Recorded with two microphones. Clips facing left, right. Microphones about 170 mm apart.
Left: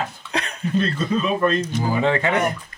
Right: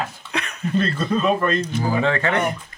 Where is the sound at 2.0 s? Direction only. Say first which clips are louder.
Left 3 dB; 15° left (ahead or behind).